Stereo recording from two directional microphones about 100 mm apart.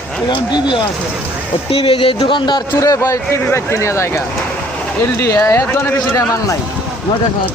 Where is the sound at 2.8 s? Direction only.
35° left (ahead or behind).